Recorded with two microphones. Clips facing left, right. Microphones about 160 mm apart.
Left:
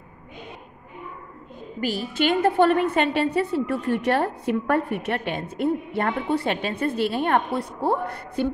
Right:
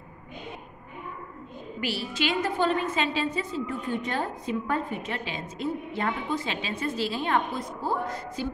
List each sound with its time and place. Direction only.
1.8 s a woman's voice: 45° left (ahead or behind); by 8.5 s 65° left (ahead or behind)